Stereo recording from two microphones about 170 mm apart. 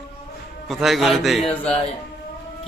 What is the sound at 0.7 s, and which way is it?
A man's voice, centre (ahead or behind).